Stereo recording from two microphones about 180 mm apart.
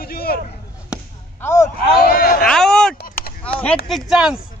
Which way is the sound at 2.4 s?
5° left (ahead or behind).